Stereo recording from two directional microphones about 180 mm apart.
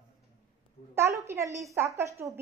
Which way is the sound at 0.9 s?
15° right (ahead or behind).